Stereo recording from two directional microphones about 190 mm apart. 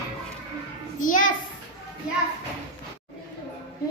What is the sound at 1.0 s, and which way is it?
Speech, 45° left (ahead or behind).